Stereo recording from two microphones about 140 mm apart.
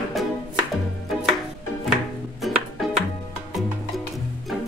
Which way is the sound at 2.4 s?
Centre (ahead or behind).